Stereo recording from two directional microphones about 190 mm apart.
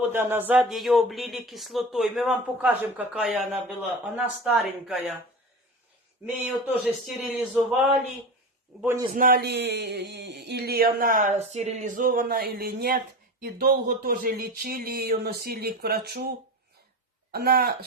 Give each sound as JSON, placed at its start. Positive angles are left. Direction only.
{"t": 0.1, "sound": "speech", "side_deg": -10}
{"t": 6.2, "sound": "speech", "side_deg": -5}
{"t": 8.8, "sound": "a man's voice", "side_deg": -15}
{"t": 9.1, "sound": "speech", "side_deg": -50}
{"t": 17.3, "sound": "speech", "side_deg": -55}